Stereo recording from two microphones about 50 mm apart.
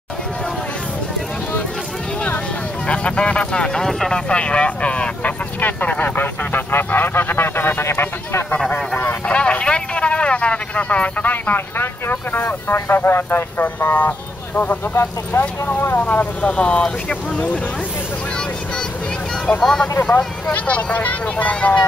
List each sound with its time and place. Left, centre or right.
2.9 s speech: left
4.3 s speech: left
9.3 s a man's voice: left
15.3 s speech: left
15.7 s speech: left
16.0 s speech: left
16.4 s speech: left
19.6 s speech: centre
20.5 s speech: left